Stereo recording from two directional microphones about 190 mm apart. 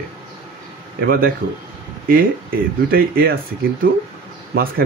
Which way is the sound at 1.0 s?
50° right (ahead or behind).